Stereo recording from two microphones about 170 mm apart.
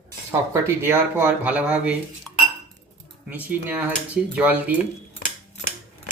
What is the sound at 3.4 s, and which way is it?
Speech, 10° right (ahead or behind).